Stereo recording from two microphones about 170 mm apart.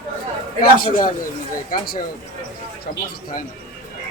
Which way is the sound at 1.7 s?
65° left (ahead or behind).